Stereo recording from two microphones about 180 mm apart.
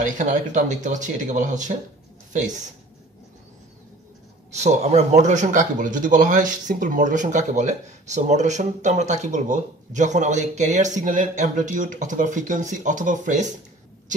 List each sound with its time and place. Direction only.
0.0 s speech: 45° right (ahead or behind)
4.6 s speech: 40° right (ahead or behind)